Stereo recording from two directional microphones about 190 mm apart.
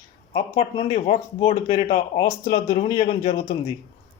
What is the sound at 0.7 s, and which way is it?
Speech, 35° left (ahead or behind).